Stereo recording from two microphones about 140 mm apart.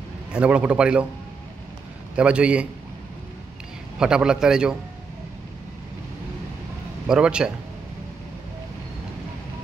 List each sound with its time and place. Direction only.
0.3 s a man's voice: 10° right (ahead or behind)
2.1 s a man's voice: 10° right (ahead or behind)
4.0 s a man's voice: 5° right (ahead or behind)
7.1 s a man's voice: 5° right (ahead or behind)